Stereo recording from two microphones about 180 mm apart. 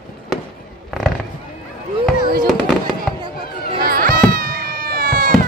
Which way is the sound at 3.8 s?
55° right (ahead or behind).